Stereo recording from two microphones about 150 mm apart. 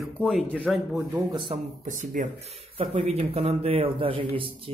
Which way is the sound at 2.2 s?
65° right (ahead or behind).